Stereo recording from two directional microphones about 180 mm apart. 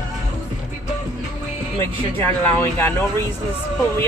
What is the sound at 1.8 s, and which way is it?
Speech, 15° left (ahead or behind).